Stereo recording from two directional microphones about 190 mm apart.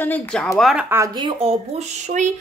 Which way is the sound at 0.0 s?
5° left (ahead or behind).